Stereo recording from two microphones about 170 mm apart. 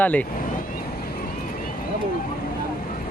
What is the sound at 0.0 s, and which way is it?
Speech, 10° left (ahead or behind).